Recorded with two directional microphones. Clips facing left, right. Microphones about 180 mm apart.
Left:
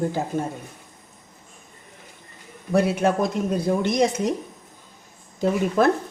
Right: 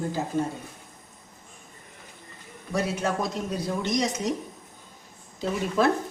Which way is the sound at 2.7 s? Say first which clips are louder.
Left 7 dB; 55° left (ahead or behind).